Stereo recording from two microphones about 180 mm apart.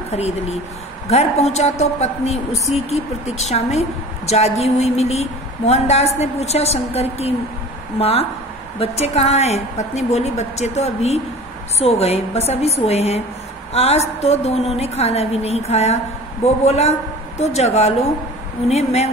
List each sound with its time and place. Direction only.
0.1 s a woman's voice: 35° left (ahead or behind)